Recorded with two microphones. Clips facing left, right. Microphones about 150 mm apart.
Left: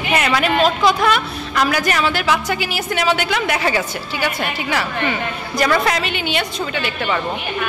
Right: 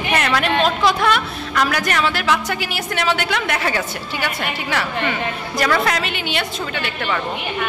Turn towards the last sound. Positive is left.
turn(degrees=0)  # may be behind; listen again after turning